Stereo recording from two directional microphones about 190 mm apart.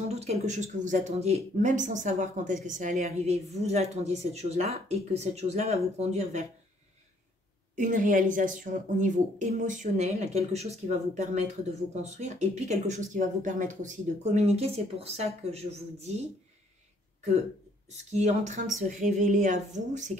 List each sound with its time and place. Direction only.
0.1 s speech: 35° right (ahead or behind)
7.7 s speech: 45° right (ahead or behind)
17.9 s speech: 35° right (ahead or behind)